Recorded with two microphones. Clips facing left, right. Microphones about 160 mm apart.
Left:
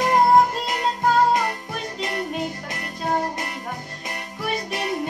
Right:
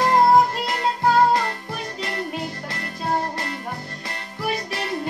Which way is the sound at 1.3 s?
15° left (ahead or behind).